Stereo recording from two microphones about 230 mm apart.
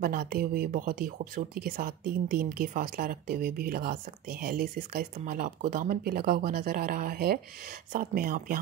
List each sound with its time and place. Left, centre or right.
0.0 s speech: right